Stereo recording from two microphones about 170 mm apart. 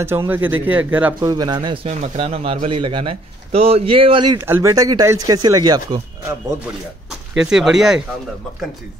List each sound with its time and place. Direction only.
0.0 s a man's voice: 15° right (ahead or behind)
1.3 s speech: 25° right (ahead or behind)
4.5 s speech: 15° right (ahead or behind)
7.1 s speech: 5° right (ahead or behind)